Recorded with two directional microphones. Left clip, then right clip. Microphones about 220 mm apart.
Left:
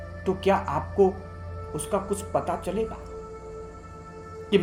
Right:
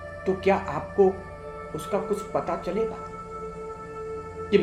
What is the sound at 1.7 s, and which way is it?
Speech, 35° left (ahead or behind).